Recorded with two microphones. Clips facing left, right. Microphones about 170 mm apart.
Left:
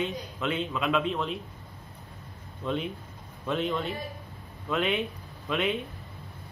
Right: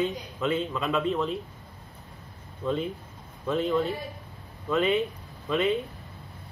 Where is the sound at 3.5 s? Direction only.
Centre (ahead or behind).